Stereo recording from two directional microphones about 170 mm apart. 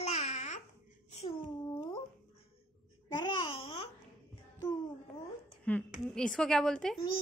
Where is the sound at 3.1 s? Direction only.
35° left (ahead or behind).